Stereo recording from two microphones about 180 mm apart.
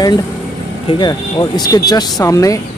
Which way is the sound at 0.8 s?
25° left (ahead or behind).